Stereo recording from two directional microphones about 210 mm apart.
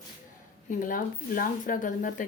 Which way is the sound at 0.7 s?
40° left (ahead or behind).